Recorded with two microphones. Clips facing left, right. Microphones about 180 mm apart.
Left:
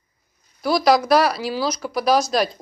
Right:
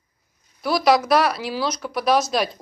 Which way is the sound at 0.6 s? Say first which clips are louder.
Left 1 dB; centre (ahead or behind).